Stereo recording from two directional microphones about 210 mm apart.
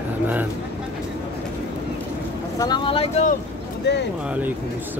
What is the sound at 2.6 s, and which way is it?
Speech, 20° left (ahead or behind).